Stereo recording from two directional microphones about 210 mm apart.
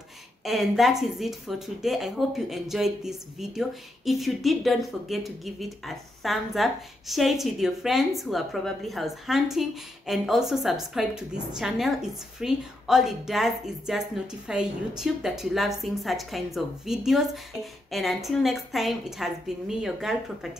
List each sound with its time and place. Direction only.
0.5 s speech: centre (ahead or behind)